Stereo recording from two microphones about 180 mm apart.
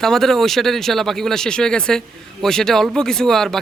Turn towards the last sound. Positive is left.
turn(degrees=0)  # may be behind; listen again after turning